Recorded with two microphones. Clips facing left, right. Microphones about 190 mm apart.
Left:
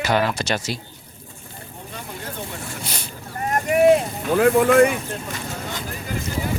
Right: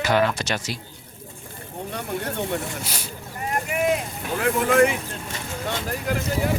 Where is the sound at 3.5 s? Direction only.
40° left (ahead or behind).